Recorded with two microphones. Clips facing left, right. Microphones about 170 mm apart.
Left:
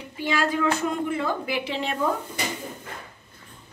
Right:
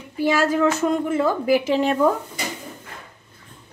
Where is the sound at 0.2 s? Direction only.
40° right (ahead or behind).